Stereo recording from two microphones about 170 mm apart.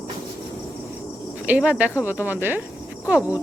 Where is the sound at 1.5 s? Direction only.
5° right (ahead or behind).